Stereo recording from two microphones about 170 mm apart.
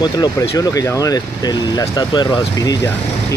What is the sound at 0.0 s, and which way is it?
Speech, 20° left (ahead or behind).